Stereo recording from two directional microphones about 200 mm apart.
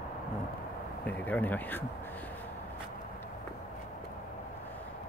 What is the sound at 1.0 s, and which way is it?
Speech, 10° left (ahead or behind).